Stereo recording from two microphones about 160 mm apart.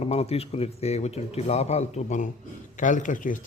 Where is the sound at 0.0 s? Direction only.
40° left (ahead or behind).